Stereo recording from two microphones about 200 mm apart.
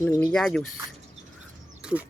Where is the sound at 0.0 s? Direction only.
5° left (ahead or behind).